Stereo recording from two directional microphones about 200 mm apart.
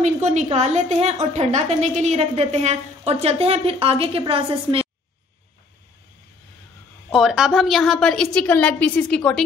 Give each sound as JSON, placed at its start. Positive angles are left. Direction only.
{"t": 0.0, "sound": "a woman's voice", "side_deg": -35}
{"t": 7.1, "sound": "a woman's voice", "side_deg": 0}